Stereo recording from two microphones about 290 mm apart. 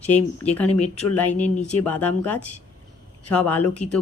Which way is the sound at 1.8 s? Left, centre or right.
Centre.